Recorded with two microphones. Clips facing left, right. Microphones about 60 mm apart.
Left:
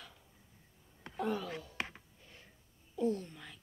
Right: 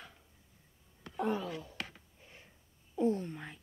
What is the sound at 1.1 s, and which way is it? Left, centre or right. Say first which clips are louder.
Speech: right 2 dB; right.